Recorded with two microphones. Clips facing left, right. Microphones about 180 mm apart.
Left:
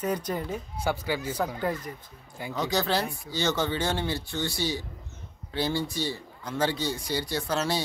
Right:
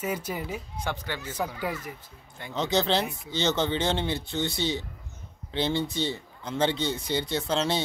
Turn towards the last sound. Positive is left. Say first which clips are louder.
# right 1 dB
turn(degrees=-25)  # may be behind; listen again after turning